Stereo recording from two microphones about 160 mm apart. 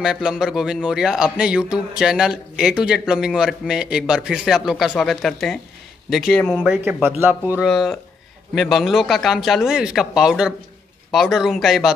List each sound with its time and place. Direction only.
0.0 s a man's voice: 5° right (ahead or behind)
7.6 s a man's voice: centre (ahead or behind)